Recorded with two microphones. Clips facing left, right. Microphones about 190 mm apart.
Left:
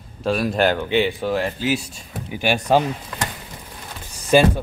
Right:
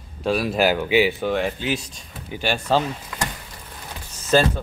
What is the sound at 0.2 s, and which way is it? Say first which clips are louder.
Speech: left 1 dB; centre (ahead or behind).